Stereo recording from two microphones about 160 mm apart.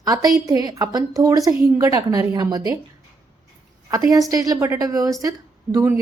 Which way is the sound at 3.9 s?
20° right (ahead or behind).